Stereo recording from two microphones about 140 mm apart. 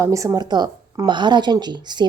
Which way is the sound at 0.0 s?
20° right (ahead or behind).